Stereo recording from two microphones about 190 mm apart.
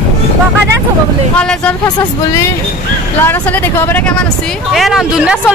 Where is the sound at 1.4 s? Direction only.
5° left (ahead or behind).